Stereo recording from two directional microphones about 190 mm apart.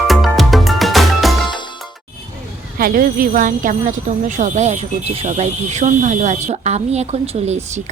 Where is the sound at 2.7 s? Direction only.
50° right (ahead or behind).